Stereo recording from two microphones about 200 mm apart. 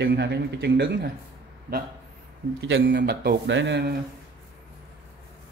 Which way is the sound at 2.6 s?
65° right (ahead or behind).